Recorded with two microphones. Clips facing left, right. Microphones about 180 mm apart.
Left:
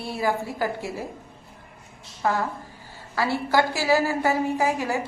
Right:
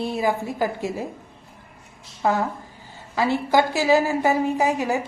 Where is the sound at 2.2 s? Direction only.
20° right (ahead or behind).